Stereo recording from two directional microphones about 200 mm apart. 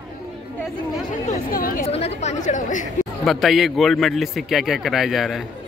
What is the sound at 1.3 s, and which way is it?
Chatter, 45° left (ahead or behind).